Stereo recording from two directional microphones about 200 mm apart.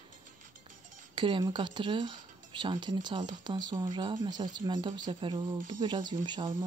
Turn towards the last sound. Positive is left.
turn(degrees=-20)  # may be behind; listen again after turning